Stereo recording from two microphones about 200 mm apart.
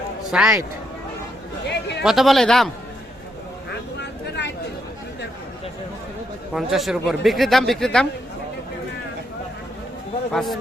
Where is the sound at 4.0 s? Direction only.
60° left (ahead or behind).